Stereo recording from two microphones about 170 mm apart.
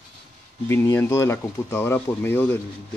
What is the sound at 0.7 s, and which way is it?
Speech, 15° left (ahead or behind).